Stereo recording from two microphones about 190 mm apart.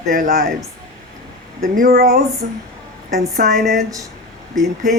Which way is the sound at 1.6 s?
55° right (ahead or behind).